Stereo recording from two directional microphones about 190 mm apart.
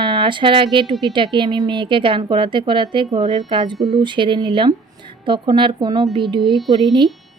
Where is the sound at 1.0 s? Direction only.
25° right (ahead or behind).